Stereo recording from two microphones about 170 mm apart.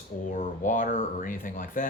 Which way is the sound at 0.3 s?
50° left (ahead or behind).